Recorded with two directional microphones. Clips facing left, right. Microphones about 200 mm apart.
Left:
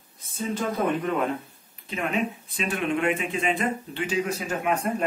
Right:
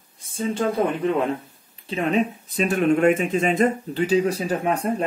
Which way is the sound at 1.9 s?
35° right (ahead or behind).